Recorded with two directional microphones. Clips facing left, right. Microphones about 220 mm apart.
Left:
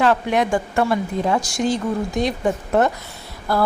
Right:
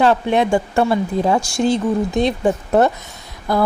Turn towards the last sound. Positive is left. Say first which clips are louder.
# right 2 dB
turn(degrees=-20)  # may be behind; listen again after turning